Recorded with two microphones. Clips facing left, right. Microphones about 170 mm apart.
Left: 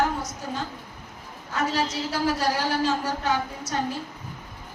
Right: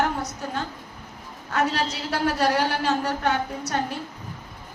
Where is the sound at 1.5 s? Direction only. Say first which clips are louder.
Right 1 dB; 65° right (ahead or behind).